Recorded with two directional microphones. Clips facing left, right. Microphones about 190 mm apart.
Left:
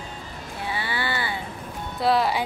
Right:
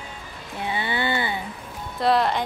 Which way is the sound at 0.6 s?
20° right (ahead or behind).